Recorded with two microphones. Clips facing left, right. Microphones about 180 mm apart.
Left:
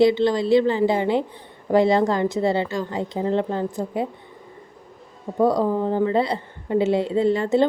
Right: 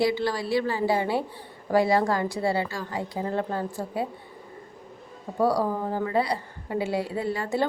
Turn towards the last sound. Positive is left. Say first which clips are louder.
# left 9 dB
turn(degrees=25)  # may be behind; listen again after turning